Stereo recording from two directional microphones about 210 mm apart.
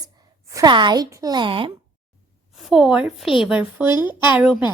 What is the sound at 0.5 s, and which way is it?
Speech, 20° right (ahead or behind).